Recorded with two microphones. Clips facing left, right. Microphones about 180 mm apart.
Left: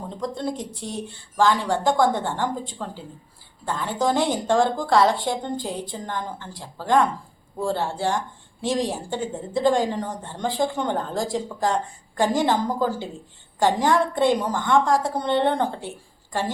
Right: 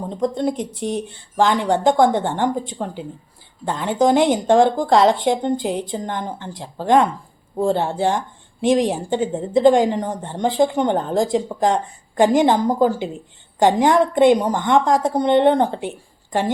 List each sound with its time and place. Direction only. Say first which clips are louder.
0.1 s a woman's voice: right 7 dB; 20° right (ahead or behind)